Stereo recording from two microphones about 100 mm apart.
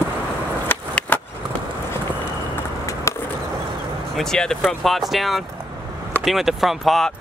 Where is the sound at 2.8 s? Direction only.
30° left (ahead or behind).